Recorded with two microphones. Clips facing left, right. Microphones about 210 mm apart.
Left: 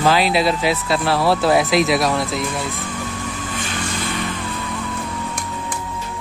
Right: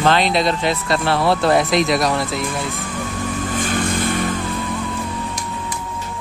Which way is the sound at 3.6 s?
50° right (ahead or behind).